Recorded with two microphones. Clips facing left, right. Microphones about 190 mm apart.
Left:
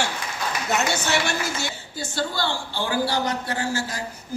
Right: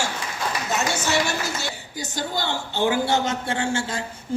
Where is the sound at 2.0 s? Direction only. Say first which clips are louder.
Left 1 dB; 20° right (ahead or behind).